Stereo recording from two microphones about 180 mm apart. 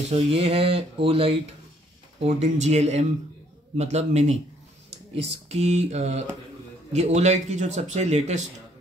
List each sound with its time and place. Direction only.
0.1 s a man's voice: 30° right (ahead or behind)